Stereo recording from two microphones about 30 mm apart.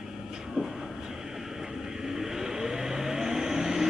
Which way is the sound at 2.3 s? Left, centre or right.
Centre.